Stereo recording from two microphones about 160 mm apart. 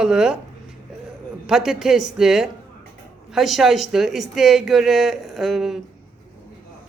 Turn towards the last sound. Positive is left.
turn(degrees=0)  # may be behind; listen again after turning